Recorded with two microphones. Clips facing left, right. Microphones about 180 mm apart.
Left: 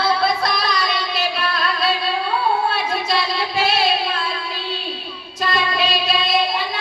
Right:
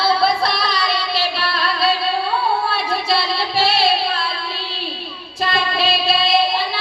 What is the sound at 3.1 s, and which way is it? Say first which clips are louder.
Music: right 1 dB; 30° right (ahead or behind).